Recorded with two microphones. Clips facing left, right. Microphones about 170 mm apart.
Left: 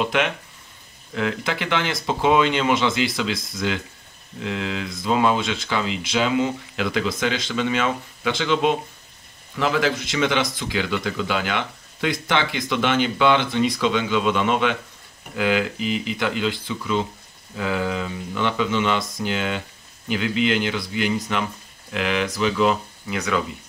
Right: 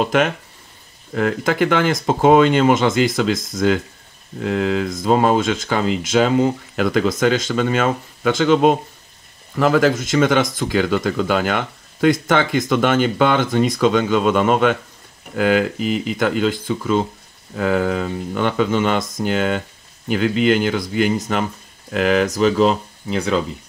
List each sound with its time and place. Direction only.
0.0 s speech: 45° right (ahead or behind)